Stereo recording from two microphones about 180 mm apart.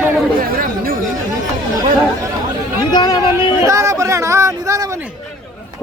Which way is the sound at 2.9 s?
20° left (ahead or behind).